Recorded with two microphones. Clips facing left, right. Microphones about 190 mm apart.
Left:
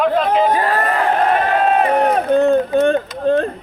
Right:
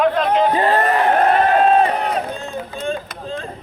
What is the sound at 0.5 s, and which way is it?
Speech, 25° right (ahead or behind).